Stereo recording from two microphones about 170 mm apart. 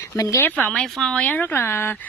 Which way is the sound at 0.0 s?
15° left (ahead or behind).